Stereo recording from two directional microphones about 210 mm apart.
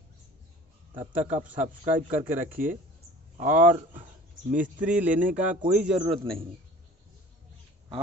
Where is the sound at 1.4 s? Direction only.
10° right (ahead or behind).